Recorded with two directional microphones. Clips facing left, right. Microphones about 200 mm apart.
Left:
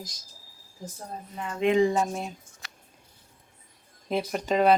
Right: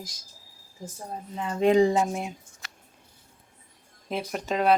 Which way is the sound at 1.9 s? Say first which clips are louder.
Right 2 dB; 15° right (ahead or behind).